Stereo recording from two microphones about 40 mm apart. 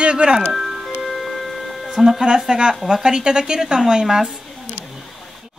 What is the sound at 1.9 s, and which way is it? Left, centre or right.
Speech, centre.